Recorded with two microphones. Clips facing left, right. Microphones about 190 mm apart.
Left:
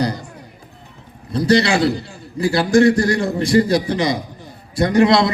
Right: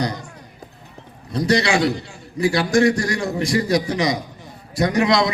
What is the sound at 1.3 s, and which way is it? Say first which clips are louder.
A man's voice: left 3 dB; 30° left (ahead or behind).